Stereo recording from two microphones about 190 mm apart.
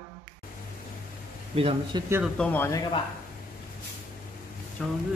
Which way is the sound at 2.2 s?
10° left (ahead or behind).